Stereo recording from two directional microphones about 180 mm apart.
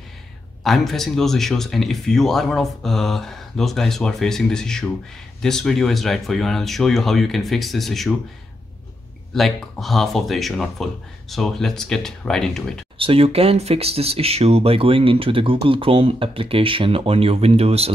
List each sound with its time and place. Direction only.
0.7 s speech: centre (ahead or behind)
9.3 s speech: centre (ahead or behind)
12.9 s speech: 30° right (ahead or behind)